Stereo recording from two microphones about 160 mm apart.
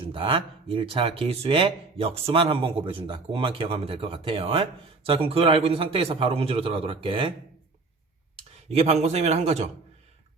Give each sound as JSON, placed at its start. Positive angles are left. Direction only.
{"t": 0.0, "sound": "speech", "side_deg": -35}
{"t": 8.7, "sound": "speech", "side_deg": -40}